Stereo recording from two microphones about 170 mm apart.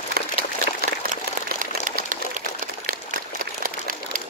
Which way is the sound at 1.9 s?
50° right (ahead or behind).